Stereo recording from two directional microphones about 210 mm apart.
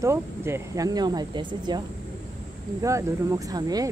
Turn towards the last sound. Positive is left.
turn(degrees=-15)  # may be behind; listen again after turning